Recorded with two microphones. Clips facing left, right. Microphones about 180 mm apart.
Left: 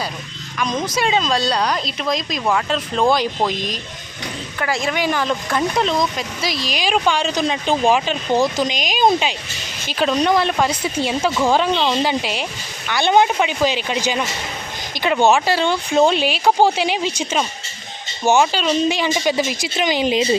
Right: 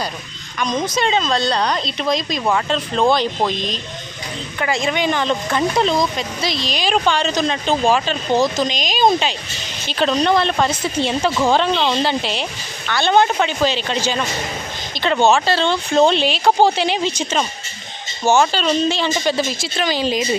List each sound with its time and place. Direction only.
0.6 s speech: 5° left (ahead or behind)